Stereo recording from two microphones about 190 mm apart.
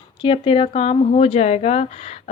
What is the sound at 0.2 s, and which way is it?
Speech, 25° left (ahead or behind).